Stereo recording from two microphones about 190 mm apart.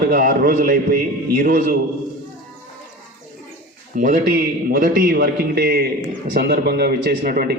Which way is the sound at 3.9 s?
45° right (ahead or behind).